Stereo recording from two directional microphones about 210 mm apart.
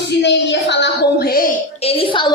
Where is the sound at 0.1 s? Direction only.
55° left (ahead or behind).